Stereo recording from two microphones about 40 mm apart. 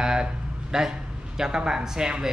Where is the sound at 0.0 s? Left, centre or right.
Centre.